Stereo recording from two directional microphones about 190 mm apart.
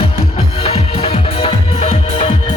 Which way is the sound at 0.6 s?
35° left (ahead or behind).